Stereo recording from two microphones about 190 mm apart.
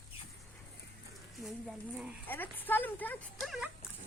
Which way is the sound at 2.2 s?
10° left (ahead or behind).